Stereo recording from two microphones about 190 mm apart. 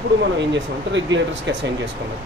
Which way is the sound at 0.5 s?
75° right (ahead or behind).